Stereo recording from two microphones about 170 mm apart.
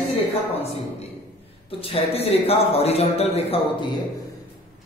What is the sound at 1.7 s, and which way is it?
A woman's voice, 35° left (ahead or behind).